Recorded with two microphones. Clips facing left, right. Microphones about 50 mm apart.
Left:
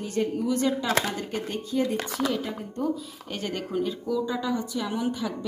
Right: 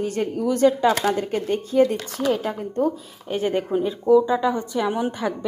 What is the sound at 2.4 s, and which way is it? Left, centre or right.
Speech, right.